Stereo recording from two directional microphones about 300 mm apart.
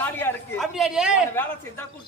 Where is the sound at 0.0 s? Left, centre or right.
Centre.